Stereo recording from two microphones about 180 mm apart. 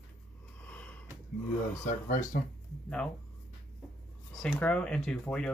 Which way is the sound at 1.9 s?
45° left (ahead or behind).